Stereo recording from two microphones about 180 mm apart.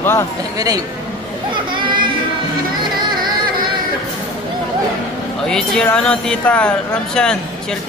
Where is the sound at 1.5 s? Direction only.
25° right (ahead or behind).